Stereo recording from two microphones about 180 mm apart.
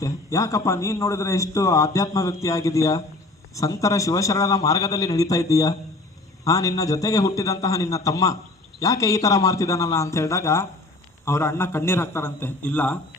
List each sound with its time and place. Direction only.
0.0 s a man's voice: 20° left (ahead or behind)